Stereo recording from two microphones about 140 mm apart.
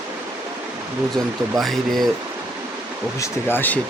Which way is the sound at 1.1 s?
Centre (ahead or behind).